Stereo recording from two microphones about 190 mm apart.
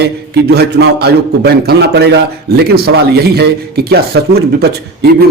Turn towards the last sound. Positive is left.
turn(degrees=-55)  # may be behind; listen again after turning